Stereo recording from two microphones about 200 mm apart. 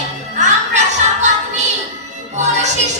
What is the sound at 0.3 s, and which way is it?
Music, 35° right (ahead or behind).